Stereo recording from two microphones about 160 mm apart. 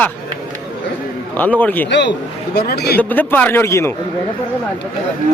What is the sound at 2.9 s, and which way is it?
Speech, 10° left (ahead or behind).